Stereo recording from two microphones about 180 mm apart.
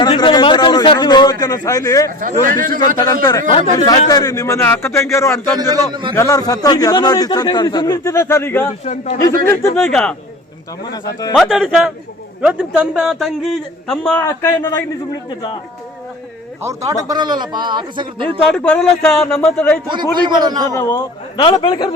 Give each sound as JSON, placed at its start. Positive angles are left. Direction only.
{"t": 0.0, "sound": "a man's voice", "side_deg": 25}
{"t": 2.2, "sound": "a man's voice", "side_deg": -50}
{"t": 2.7, "sound": "a man's voice", "side_deg": 25}
{"t": 5.5, "sound": "a man's voice", "side_deg": -25}
{"t": 6.1, "sound": "a man's voice", "side_deg": 20}
{"t": 8.6, "sound": "a man's voice", "side_deg": 40}
{"t": 9.7, "sound": "a man's voice", "side_deg": 5}
{"t": 11.3, "sound": "a man's voice", "side_deg": 0}
{"t": 15.1, "sound": "a man's voice", "side_deg": 25}
{"t": 16.6, "sound": "a man's voice", "side_deg": -20}
{"t": 18.5, "sound": "speech", "side_deg": 5}
{"t": 19.9, "sound": "a man's voice", "side_deg": -25}
{"t": 20.7, "sound": "a man's voice", "side_deg": 15}